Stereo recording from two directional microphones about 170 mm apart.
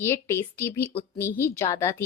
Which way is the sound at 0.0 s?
15° left (ahead or behind).